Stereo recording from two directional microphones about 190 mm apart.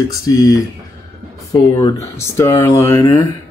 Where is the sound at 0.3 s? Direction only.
20° left (ahead or behind).